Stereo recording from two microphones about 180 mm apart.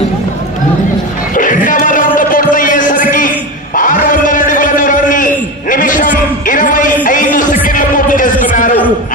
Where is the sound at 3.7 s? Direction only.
50° left (ahead or behind).